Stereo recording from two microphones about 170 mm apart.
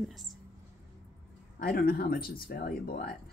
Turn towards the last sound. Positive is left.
turn(degrees=65)  # may be behind; listen again after turning